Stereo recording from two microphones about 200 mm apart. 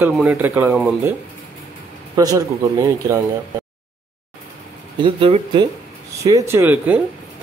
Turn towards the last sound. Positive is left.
turn(degrees=-10)  # may be behind; listen again after turning